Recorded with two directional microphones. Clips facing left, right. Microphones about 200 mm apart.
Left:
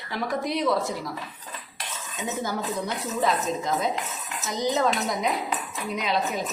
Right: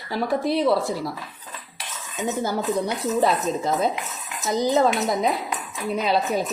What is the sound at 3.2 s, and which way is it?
Speech, 35° right (ahead or behind).